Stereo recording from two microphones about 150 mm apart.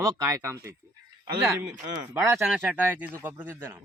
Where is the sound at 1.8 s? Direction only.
20° right (ahead or behind).